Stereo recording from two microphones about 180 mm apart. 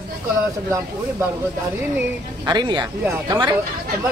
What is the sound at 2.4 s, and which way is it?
Speech, 25° right (ahead or behind).